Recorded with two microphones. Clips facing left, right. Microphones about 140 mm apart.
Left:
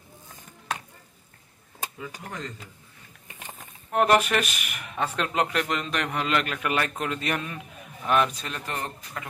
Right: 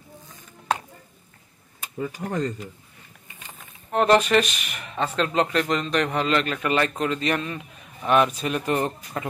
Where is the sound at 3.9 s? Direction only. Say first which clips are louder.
Right 3 dB; 10° left (ahead or behind); by 8.9 s 15° right (ahead or behind).